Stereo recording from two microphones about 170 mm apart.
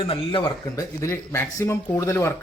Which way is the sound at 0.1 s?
30° left (ahead or behind).